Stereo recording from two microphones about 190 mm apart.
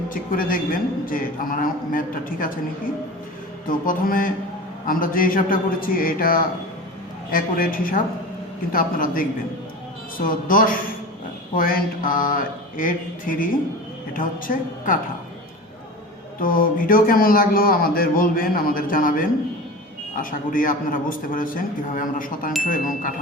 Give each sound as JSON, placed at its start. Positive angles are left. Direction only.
{"t": 0.1, "sound": "speech", "side_deg": 45}
{"t": 3.7, "sound": "speech", "side_deg": 45}
{"t": 16.4, "sound": "speech", "side_deg": 45}